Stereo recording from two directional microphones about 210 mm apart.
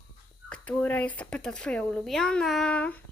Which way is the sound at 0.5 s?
5° left (ahead or behind).